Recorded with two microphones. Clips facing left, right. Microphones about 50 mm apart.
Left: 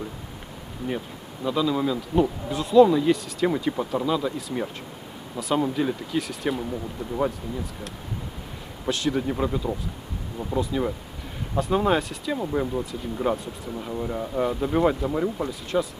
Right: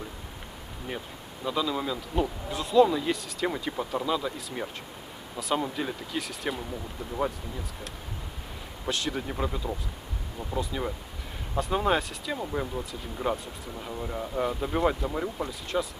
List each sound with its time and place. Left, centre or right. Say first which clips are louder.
1.5 s speech: left 5 dB; centre
8.9 s speech: left 6 dB; centre